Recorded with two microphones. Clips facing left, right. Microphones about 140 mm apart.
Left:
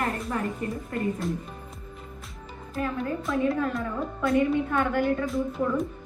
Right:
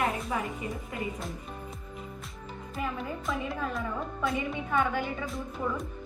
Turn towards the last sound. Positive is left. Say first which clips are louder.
# left 7 dB
turn(degrees=0)  # may be behind; listen again after turning